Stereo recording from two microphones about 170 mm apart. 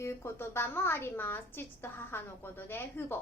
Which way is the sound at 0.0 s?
15° left (ahead or behind).